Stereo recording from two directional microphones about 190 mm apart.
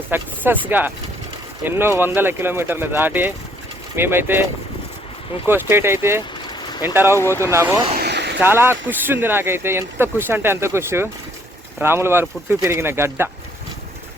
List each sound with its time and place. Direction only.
0.1 s speech: 10° right (ahead or behind)
5.5 s speech: 10° right (ahead or behind)
7.2 s speech: 15° left (ahead or behind)
7.4 s speech: 15° right (ahead or behind)
7.9 s vehicle: 60° right (ahead or behind)
8.4 s speech: 10° right (ahead or behind)